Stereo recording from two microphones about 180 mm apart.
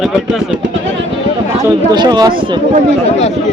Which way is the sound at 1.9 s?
20° right (ahead or behind).